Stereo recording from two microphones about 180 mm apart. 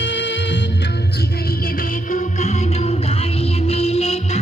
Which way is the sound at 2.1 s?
35° left (ahead or behind).